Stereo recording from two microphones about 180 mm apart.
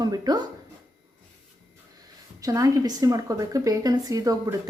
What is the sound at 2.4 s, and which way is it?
Speech, 20° right (ahead or behind).